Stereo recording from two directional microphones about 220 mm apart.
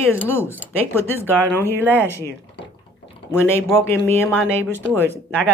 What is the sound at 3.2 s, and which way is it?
Speech, 10° left (ahead or behind).